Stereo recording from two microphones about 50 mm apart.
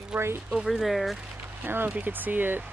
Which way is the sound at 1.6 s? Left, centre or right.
Right.